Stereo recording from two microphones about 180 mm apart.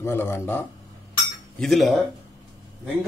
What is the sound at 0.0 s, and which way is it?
Speech, 15° left (ahead or behind).